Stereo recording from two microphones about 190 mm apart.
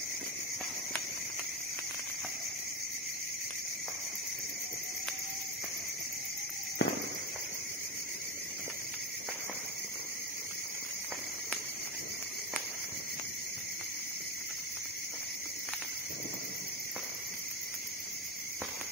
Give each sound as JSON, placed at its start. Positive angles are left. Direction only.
{"t": 6.8, "sound": "walk", "side_deg": 70}